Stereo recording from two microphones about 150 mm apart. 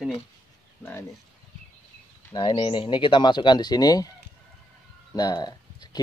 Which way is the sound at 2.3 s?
30° left (ahead or behind).